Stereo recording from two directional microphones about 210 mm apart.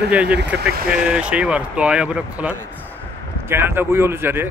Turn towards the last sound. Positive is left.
turn(degrees=-10)  # may be behind; listen again after turning